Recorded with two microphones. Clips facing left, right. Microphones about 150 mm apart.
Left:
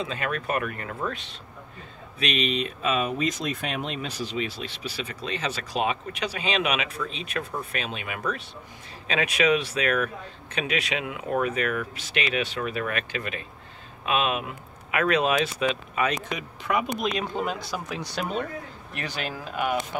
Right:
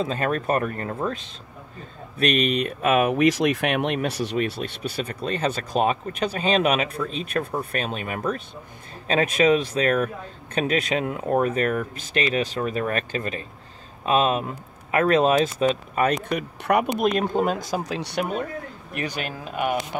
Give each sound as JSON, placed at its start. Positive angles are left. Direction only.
{"t": 0.0, "sound": "speech", "side_deg": -40}
{"t": 2.1, "sound": "speech", "side_deg": -50}
{"t": 17.0, "sound": "speech", "side_deg": -50}
{"t": 17.8, "sound": "speech", "side_deg": -80}